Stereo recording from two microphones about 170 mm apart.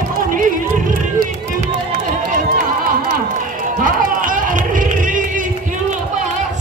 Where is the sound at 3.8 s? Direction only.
50° right (ahead or behind).